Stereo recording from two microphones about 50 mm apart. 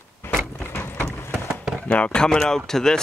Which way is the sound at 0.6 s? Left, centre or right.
Left.